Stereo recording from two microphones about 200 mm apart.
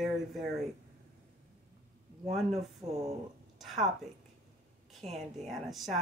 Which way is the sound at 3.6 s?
Centre (ahead or behind).